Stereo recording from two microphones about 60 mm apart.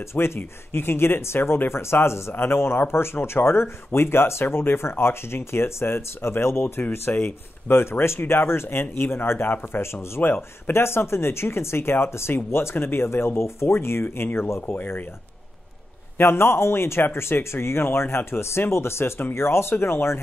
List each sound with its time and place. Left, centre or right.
0.1 s speech: left
10.2 s speech: left
10.7 s speech: left
14.8 s speech: left
16.2 s speech: left